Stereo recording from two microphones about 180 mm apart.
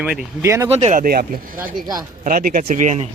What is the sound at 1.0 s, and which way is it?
Speech, 55° right (ahead or behind).